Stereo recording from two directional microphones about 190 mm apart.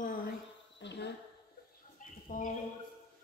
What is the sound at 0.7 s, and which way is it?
Speech, 65° left (ahead or behind).